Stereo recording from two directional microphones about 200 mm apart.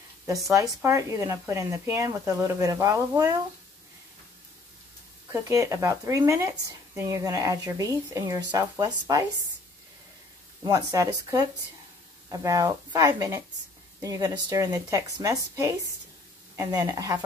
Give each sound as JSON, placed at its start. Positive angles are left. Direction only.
{"t": 0.3, "sound": "speech", "side_deg": -15}
{"t": 5.3, "sound": "speech", "side_deg": -15}
{"t": 10.6, "sound": "speech", "side_deg": -20}